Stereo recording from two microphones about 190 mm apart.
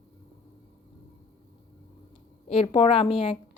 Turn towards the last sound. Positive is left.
turn(degrees=30)  # may be behind; listen again after turning